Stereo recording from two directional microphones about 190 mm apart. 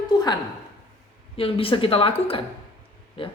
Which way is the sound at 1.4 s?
30° left (ahead or behind).